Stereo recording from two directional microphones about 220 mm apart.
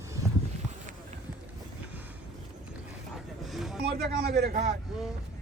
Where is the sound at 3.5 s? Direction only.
Centre (ahead or behind).